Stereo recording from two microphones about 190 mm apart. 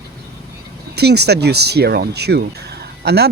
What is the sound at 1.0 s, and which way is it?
Speech, 60° right (ahead or behind).